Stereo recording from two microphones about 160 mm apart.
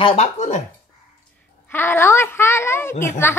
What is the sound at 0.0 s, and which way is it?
Speech, 40° left (ahead or behind).